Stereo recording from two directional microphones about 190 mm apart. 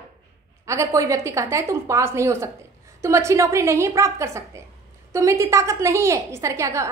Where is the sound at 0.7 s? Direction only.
15° right (ahead or behind).